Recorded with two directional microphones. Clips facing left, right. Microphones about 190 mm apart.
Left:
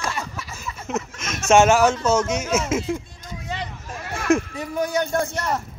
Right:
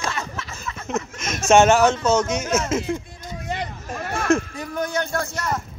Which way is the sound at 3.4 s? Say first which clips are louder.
Right 3 dB; 50° right (ahead or behind).